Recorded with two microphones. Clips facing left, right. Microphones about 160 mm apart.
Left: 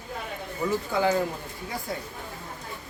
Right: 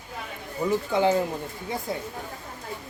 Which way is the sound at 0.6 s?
20° right (ahead or behind).